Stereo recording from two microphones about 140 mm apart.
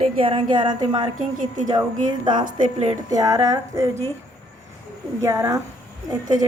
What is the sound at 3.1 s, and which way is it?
Speech, 25° right (ahead or behind).